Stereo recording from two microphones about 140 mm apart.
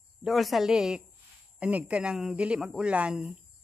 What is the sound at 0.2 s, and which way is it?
A woman's voice, centre (ahead or behind).